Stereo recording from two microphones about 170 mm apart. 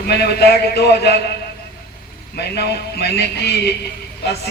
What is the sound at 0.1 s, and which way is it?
Speech, 70° left (ahead or behind).